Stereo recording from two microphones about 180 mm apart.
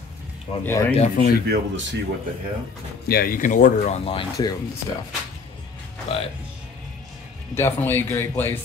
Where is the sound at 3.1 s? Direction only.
55° left (ahead or behind); by 4.5 s 30° left (ahead or behind).